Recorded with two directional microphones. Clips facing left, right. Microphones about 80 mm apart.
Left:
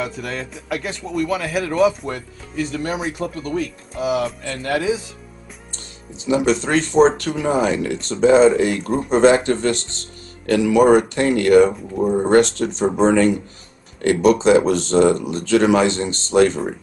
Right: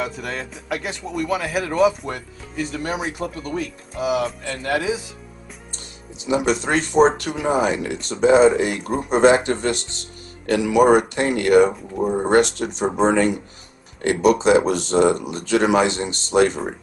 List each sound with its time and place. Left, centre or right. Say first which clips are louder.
0.0 s speech: left 1 dB; centre
6.2 s speech: left 2 dB; centre